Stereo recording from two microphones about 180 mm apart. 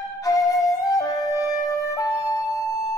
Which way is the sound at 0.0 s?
20° left (ahead or behind).